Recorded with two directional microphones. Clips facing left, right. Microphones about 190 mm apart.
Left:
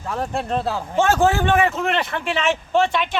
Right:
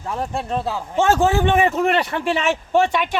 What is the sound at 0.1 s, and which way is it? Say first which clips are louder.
Speech: left 1 dB; 5° right (ahead or behind).